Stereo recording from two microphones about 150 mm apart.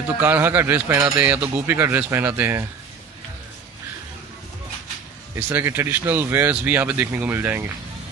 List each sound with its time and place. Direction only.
0.2 s speech: 15° right (ahead or behind)
5.3 s speech: 15° right (ahead or behind)